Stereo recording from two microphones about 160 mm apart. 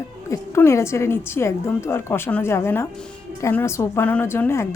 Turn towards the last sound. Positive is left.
turn(degrees=15)  # may be behind; listen again after turning